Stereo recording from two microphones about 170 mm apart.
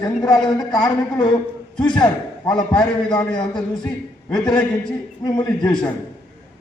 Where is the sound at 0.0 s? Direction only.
25° left (ahead or behind).